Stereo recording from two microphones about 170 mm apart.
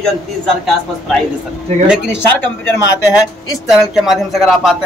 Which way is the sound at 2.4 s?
15° left (ahead or behind).